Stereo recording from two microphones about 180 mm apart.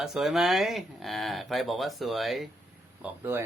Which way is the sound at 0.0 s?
Centre (ahead or behind).